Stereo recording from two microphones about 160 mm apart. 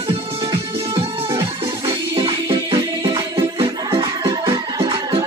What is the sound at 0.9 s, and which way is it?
Music, 30° right (ahead or behind).